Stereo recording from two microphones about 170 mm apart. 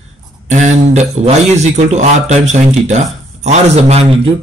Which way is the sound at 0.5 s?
45° right (ahead or behind).